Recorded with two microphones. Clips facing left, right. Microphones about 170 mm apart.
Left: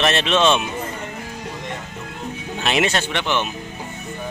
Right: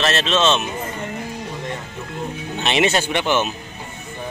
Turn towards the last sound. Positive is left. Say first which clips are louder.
# right 3 dB
turn(degrees=-5)  # may be behind; listen again after turning